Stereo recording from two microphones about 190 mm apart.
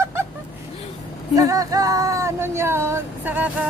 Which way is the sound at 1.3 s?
20° right (ahead or behind).